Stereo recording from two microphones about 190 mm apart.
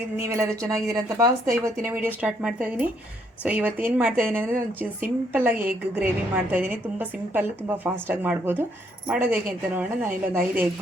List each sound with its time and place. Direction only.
0.2 s a woman's voice: 15° right (ahead or behind)